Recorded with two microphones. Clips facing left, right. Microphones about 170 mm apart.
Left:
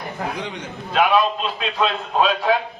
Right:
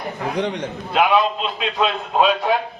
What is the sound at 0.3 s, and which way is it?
Speech, 70° right (ahead or behind).